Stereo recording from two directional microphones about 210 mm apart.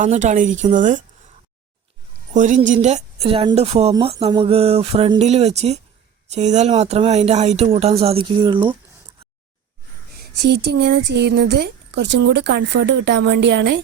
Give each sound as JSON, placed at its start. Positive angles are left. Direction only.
{"t": 0.0, "sound": "a woman's voice", "side_deg": -35}
{"t": 2.3, "sound": "speech", "side_deg": -35}
{"t": 10.3, "sound": "speech", "side_deg": -55}